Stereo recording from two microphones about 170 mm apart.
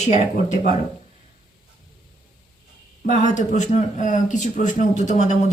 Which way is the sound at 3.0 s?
50° left (ahead or behind).